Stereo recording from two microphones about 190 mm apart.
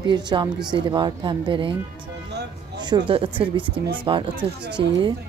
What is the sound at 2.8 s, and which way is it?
A woman's voice, 25° right (ahead or behind).